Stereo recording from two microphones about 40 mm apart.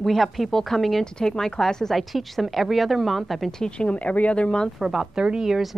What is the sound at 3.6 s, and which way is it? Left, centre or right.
Speech, left.